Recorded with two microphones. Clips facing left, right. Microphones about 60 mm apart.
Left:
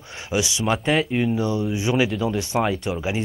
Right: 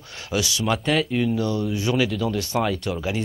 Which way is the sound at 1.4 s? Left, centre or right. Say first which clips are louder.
Left 1 dB; left.